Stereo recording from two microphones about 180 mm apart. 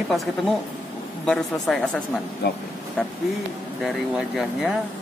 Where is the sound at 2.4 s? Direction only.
70° left (ahead or behind).